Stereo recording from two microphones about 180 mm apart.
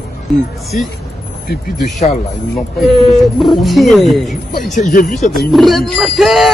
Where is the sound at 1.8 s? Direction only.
Centre (ahead or behind).